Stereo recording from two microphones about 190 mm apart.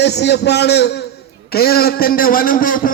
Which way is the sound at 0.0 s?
60° left (ahead or behind).